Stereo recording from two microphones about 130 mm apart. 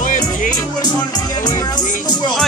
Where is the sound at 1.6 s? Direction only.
30° left (ahead or behind).